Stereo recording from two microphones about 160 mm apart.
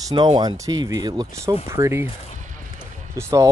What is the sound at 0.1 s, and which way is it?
Speech, 30° right (ahead or behind).